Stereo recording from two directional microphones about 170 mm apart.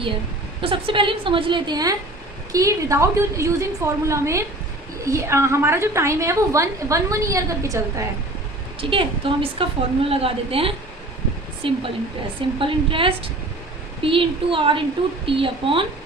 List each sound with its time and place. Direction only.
0.6 s a woman's voice: 30° right (ahead or behind)
8.8 s a woman's voice: 30° right (ahead or behind)